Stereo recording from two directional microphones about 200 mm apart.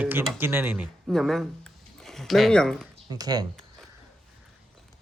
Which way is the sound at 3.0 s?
20° right (ahead or behind).